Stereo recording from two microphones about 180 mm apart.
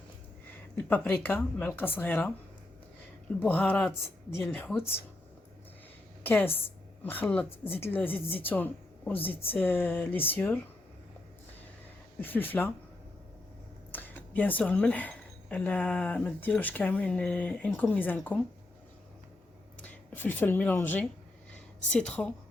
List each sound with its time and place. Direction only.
0.8 s speech: 10° left (ahead or behind)
3.4 s speech: 10° left (ahead or behind)
6.2 s a woman's voice: 10° left (ahead or behind)
12.2 s speech: 10° left (ahead or behind)
13.9 s speech: 10° left (ahead or behind)
19.8 s speech: 10° left (ahead or behind)